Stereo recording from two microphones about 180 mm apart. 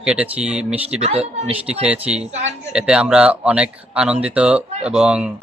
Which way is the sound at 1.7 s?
5° right (ahead or behind).